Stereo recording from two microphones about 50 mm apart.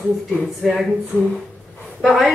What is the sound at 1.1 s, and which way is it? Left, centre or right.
Speech, left.